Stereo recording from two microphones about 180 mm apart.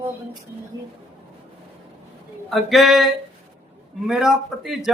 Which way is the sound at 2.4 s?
Centre (ahead or behind).